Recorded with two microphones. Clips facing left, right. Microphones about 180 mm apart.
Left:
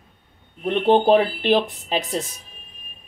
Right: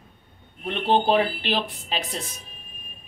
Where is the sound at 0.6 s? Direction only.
50° left (ahead or behind).